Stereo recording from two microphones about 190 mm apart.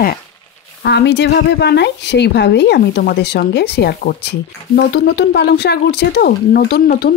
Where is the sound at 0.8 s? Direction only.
65° left (ahead or behind).